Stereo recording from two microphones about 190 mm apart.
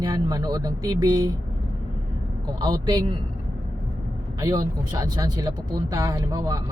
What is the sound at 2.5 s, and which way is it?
Speech, 20° right (ahead or behind).